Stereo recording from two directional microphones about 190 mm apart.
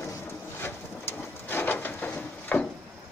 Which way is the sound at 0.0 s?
15° left (ahead or behind).